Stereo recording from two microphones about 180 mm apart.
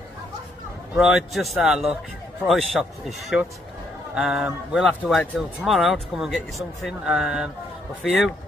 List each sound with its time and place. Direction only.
0.9 s speech: 5° right (ahead or behind)